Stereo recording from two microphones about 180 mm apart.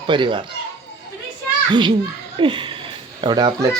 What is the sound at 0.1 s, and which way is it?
Speech, 25° right (ahead or behind).